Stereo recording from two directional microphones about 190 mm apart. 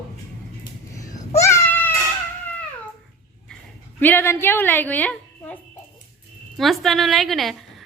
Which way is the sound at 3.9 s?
10° left (ahead or behind).